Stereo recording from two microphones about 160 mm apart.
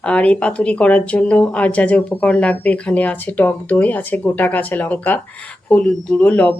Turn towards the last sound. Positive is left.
turn(degrees=10)  # may be behind; listen again after turning